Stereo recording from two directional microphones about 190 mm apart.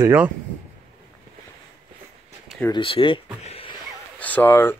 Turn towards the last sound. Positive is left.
turn(degrees=10)  # may be behind; listen again after turning